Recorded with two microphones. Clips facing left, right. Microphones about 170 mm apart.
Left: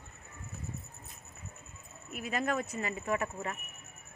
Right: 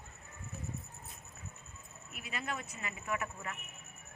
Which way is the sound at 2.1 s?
45° left (ahead or behind).